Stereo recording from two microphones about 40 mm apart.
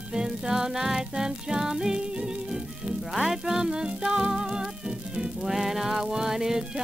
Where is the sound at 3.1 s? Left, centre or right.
Centre.